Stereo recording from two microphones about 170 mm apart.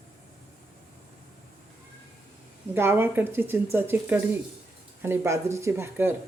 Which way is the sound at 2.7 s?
15° right (ahead or behind).